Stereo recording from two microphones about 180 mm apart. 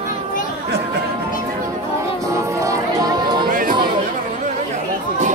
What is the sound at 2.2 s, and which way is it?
Music, 15° right (ahead or behind).